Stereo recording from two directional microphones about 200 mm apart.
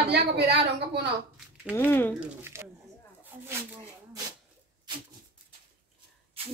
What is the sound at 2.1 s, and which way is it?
Speech, 10° right (ahead or behind).